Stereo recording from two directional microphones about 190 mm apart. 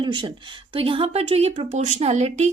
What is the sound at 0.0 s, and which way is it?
A woman's voice, 25° right (ahead or behind).